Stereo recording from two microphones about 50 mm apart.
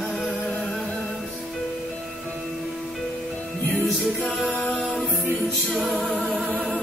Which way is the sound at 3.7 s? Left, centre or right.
Centre.